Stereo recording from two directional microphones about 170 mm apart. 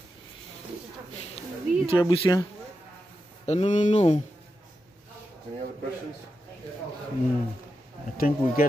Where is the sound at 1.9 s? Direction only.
30° left (ahead or behind).